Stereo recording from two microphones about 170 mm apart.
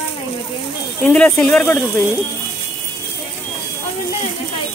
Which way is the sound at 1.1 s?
15° left (ahead or behind).